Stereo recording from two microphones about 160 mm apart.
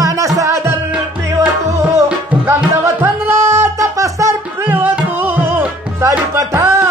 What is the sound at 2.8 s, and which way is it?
Music, 15° right (ahead or behind).